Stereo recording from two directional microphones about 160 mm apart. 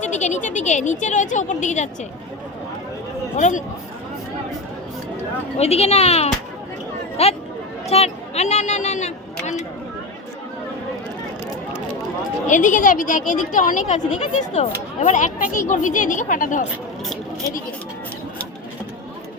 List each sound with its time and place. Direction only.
0.0 s speech: 45° left (ahead or behind)
3.3 s speech: 45° left (ahead or behind)
5.5 s speech: 40° left (ahead or behind)
12.5 s speech: 50° left (ahead or behind)